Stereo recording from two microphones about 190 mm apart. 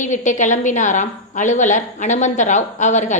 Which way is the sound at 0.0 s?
40° left (ahead or behind).